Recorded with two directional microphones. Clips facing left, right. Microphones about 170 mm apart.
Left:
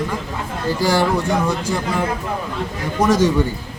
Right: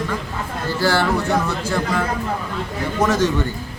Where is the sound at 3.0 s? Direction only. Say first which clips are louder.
Left 3 dB; 10° left (ahead or behind).